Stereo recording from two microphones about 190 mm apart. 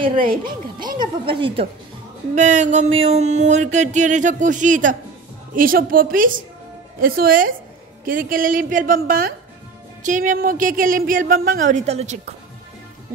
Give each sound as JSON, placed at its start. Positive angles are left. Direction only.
{"t": 0.5, "sound": "a woman's voice", "side_deg": -50}
{"t": 0.9, "sound": "a woman's voice", "side_deg": -25}
{"t": 2.3, "sound": "a sound", "side_deg": -40}
{"t": 5.5, "sound": "a woman's voice", "side_deg": -50}